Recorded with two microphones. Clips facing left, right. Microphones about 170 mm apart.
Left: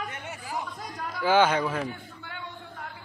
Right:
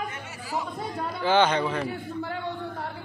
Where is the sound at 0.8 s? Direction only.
30° right (ahead or behind).